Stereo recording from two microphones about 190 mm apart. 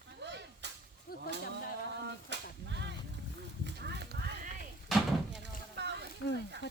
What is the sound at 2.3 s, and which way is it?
Whip, 65° right (ahead or behind).